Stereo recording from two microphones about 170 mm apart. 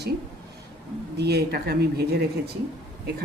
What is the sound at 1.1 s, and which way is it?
Speech, 75° right (ahead or behind).